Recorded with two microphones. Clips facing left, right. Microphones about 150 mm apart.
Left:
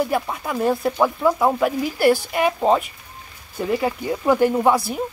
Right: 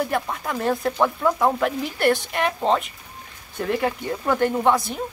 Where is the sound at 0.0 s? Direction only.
5° left (ahead or behind).